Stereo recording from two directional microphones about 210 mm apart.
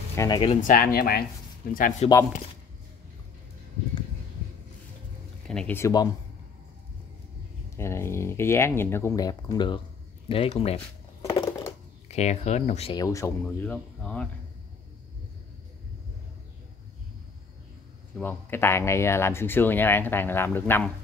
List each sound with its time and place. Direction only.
0.1 s speech: 15° left (ahead or behind)
0.6 s speech: 40° left (ahead or behind)
5.5 s speech: 5° left (ahead or behind)
7.7 s speech: 15° left (ahead or behind); by 10.8 s 30° left (ahead or behind)
11.2 s a sound: 15° left (ahead or behind)
12.1 s speech: 30° left (ahead or behind)
12.9 s speech: 15° left (ahead or behind)
18.1 s speech: 10° left (ahead or behind)